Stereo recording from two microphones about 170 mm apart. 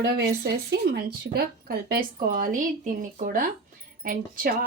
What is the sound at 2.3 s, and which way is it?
Speech, 55° right (ahead or behind).